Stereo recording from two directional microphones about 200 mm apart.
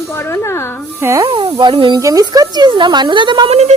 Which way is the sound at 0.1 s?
15° left (ahead or behind).